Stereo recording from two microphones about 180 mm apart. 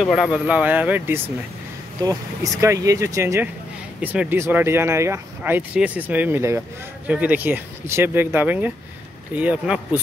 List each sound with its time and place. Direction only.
0.0 s speech: centre (ahead or behind)